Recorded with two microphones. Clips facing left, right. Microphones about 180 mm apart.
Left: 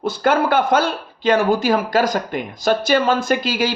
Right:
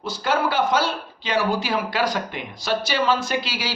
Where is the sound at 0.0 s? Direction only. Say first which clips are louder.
Left 5 dB; 55° left (ahead or behind).